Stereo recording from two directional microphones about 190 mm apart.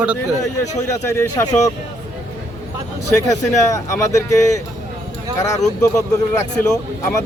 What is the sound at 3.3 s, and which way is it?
Speech, 15° left (ahead or behind).